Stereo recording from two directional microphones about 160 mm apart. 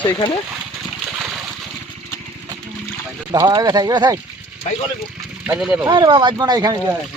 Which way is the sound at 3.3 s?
25° right (ahead or behind).